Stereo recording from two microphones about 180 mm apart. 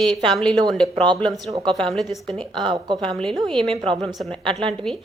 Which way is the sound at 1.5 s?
25° right (ahead or behind).